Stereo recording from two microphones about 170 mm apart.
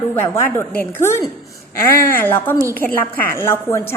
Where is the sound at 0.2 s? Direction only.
15° left (ahead or behind).